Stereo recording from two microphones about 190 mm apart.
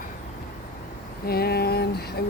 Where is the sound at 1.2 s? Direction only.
55° left (ahead or behind).